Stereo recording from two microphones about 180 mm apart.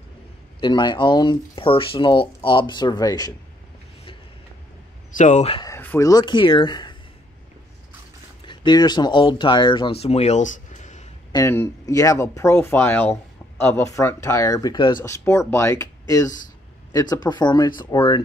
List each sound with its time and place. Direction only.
0.6 s speech: 25° left (ahead or behind)
5.1 s speech: 40° left (ahead or behind)
5.6 s speech: 15° left (ahead or behind)
8.5 s speech: 25° left (ahead or behind); by 11.1 s 40° left (ahead or behind)
11.3 s speech: 15° left (ahead or behind)